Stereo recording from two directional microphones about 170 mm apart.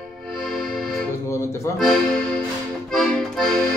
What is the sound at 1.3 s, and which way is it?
Music, 15° left (ahead or behind).